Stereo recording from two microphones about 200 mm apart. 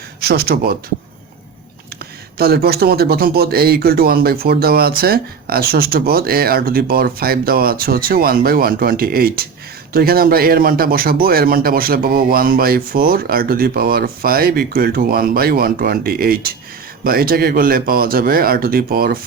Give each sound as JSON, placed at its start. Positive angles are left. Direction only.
{"t": 0.2, "sound": "speech", "side_deg": -50}
{"t": 2.4, "sound": "speech", "side_deg": -50}